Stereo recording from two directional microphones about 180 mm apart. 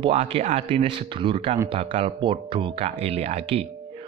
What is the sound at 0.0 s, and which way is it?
Speech, 35° right (ahead or behind).